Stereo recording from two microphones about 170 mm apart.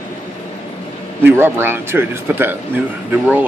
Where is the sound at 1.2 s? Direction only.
10° right (ahead or behind).